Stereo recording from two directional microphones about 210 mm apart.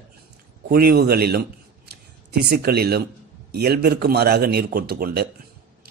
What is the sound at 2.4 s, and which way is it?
Speech, 45° right (ahead or behind).